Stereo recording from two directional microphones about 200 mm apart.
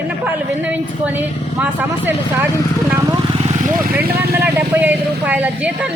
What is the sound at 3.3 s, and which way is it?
Vehicle, 40° right (ahead or behind).